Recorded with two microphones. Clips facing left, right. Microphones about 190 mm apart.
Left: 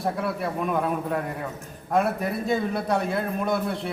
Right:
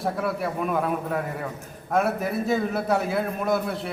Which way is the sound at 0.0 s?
Centre (ahead or behind).